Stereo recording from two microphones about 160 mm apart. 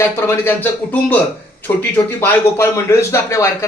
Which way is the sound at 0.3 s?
15° left (ahead or behind).